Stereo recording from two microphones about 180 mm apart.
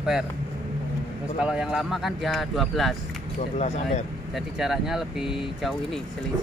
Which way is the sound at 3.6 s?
40° left (ahead or behind).